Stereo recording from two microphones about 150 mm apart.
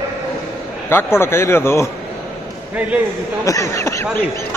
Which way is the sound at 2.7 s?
10° right (ahead or behind).